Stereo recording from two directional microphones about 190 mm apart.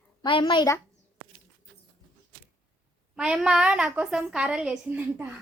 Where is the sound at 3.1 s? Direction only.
5° right (ahead or behind).